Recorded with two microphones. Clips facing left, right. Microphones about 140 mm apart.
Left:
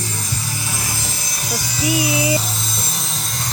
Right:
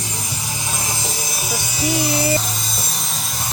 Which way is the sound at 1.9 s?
10° left (ahead or behind).